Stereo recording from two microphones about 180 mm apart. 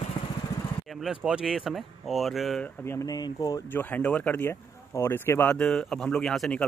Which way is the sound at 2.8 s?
15° left (ahead or behind).